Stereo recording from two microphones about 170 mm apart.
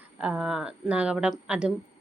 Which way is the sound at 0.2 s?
5° right (ahead or behind).